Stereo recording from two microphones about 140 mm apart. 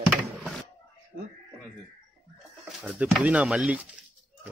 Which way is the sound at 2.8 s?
5° right (ahead or behind).